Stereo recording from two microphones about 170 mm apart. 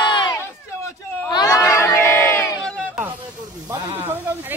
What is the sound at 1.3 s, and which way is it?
Crowd, 20° left (ahead or behind).